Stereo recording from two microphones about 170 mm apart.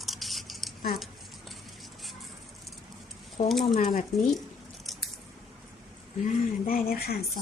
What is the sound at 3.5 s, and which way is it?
Speech, centre (ahead or behind).